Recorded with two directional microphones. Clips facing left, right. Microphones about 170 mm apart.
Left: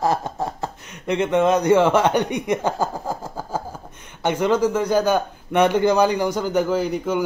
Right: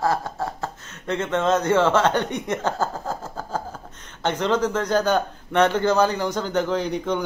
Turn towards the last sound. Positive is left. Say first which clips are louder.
# left 2 dB
turn(degrees=5)  # may be behind; listen again after turning